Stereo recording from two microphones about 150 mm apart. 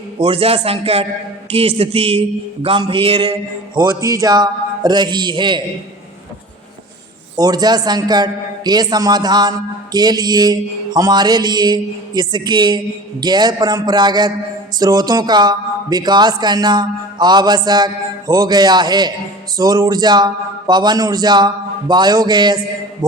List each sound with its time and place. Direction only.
0.2 s a man's voice: 40° right (ahead or behind)
7.3 s a man's voice: 25° right (ahead or behind)